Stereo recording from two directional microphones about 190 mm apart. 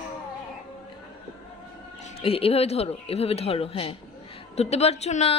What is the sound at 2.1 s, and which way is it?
Speech, 30° left (ahead or behind).